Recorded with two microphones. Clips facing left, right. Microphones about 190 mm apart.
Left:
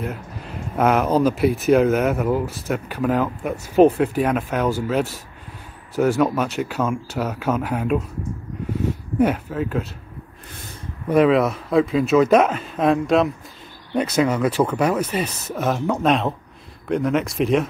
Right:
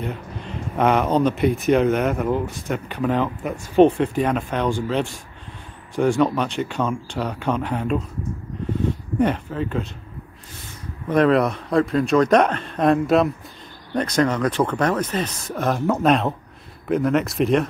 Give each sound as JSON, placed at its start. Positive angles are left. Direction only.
{"t": 0.0, "sound": "speech", "side_deg": 5}
{"t": 9.2, "sound": "speech", "side_deg": 5}
{"t": 11.1, "sound": "speech", "side_deg": 5}